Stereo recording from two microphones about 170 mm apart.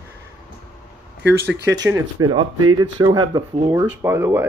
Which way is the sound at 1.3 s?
85° right.